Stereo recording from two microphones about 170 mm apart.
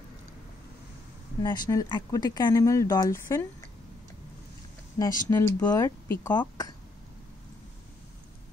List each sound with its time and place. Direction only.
1.4 s speech: 25° left (ahead or behind)
5.0 s speech: 20° left (ahead or behind)